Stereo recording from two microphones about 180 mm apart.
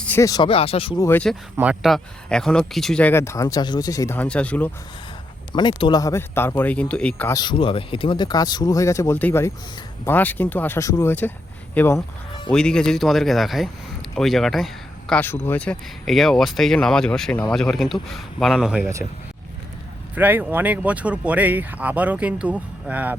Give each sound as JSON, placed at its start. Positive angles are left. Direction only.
{"t": 0.0, "sound": "speech", "side_deg": 15}
{"t": 1.0, "sound": "speech", "side_deg": 10}
{"t": 1.5, "sound": "speech", "side_deg": -5}
{"t": 5.5, "sound": "speech", "side_deg": 25}
{"t": 7.3, "sound": "speech", "side_deg": 25}
{"t": 20.1, "sound": "speech", "side_deg": -10}